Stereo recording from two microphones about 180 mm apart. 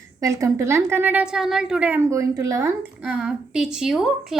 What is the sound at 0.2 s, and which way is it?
A woman's voice, 20° right (ahead or behind).